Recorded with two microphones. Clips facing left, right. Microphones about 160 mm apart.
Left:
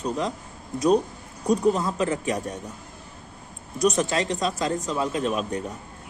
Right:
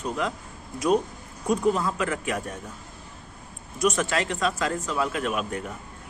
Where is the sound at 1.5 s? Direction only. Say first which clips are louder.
Left 2 dB; 40° left (ahead or behind).